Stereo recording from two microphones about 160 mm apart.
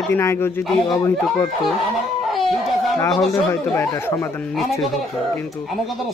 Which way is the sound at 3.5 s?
15° left (ahead or behind).